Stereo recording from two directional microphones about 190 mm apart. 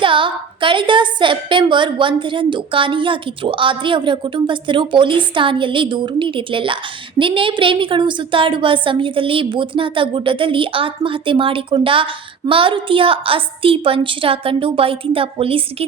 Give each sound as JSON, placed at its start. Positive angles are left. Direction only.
{"t": 0.0, "sound": "a woman's voice", "side_deg": -25}